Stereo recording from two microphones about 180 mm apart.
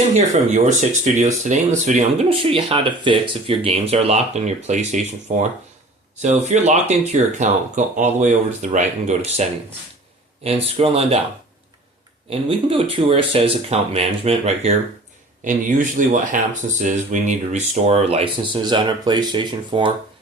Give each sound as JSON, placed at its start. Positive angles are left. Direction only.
{"t": 0.1, "sound": "speech", "side_deg": -40}
{"t": 2.6, "sound": "speech", "side_deg": -30}
{"t": 12.3, "sound": "speech", "side_deg": -30}
{"t": 15.4, "sound": "speech", "side_deg": -45}